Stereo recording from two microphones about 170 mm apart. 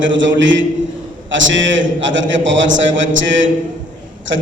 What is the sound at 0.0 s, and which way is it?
A man's voice, 90° right.